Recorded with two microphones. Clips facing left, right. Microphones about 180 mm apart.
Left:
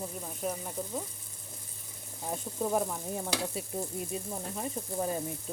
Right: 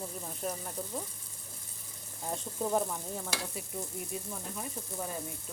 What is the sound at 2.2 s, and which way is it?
Speech, 5° left (ahead or behind).